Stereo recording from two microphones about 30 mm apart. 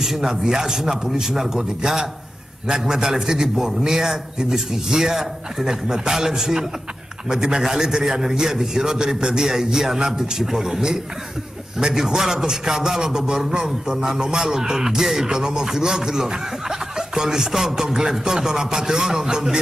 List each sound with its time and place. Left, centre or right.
0.0 s a man's voice: centre